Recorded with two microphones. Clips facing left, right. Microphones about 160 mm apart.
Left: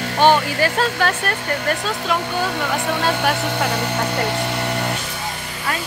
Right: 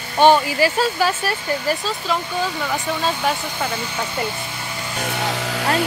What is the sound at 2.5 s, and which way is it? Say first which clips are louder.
Speech: left 2 dB; 70° left (ahead or behind).